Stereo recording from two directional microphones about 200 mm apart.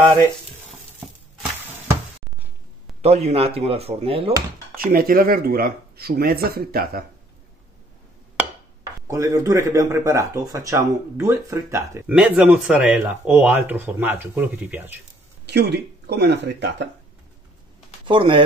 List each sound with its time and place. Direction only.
3.0 s speech: 30° right (ahead or behind)
4.7 s speech: 45° right (ahead or behind)
9.0 s speech: 15° right (ahead or behind)
15.4 s speech: 55° right (ahead or behind)
18.0 s speech: 25° right (ahead or behind)